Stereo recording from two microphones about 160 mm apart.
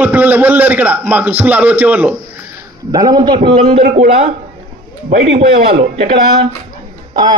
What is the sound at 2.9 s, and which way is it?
Speech, 25° right (ahead or behind).